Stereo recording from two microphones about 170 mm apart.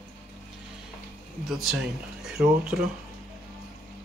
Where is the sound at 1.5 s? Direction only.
5° right (ahead or behind).